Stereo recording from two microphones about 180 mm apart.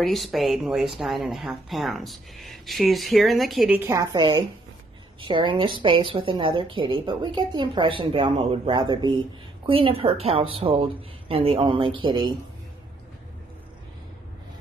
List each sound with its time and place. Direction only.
0.0 s speech: centre (ahead or behind)
3.9 s a woman's voice: 20° right (ahead or behind)